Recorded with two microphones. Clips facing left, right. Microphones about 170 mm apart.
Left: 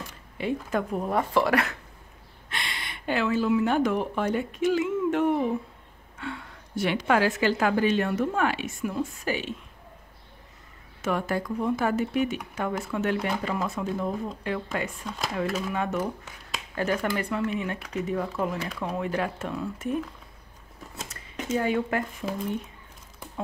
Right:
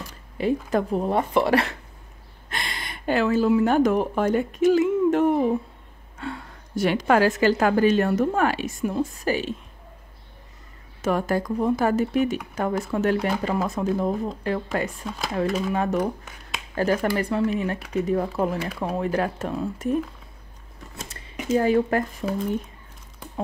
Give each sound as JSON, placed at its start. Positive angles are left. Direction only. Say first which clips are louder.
{"t": 0.4, "sound": "speech", "louder": "right 5 dB", "side_deg": -35}
{"t": 2.5, "sound": "a woman's voice", "louder": "right 3 dB", "side_deg": -40}
{"t": 11.0, "sound": "a woman's voice", "louder": "right 4 dB", "side_deg": -40}
{"t": 21.5, "sound": "a woman's voice", "louder": "right 6 dB", "side_deg": -35}